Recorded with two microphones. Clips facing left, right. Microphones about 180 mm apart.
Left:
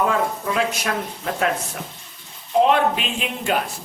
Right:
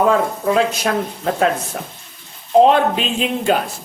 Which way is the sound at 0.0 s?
35° right (ahead or behind).